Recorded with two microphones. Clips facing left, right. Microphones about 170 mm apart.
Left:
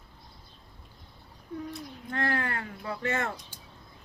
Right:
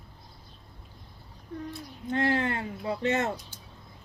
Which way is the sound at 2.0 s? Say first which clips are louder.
Right 5 dB; 20° right (ahead or behind).